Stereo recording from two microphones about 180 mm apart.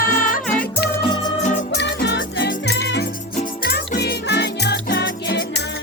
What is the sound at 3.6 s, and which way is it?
Music, 55° left (ahead or behind).